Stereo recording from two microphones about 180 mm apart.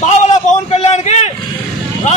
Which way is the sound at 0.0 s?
40° left (ahead or behind).